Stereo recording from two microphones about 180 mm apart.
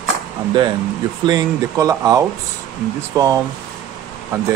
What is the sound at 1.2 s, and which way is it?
Speech, 20° right (ahead or behind).